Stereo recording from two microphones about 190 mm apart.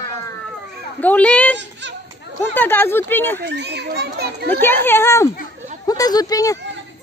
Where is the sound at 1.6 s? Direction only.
70° right (ahead or behind).